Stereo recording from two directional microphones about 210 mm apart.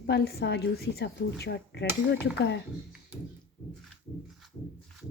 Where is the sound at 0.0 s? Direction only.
50° left (ahead or behind).